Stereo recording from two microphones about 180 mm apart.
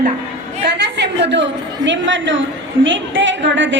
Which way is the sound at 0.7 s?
75° right (ahead or behind).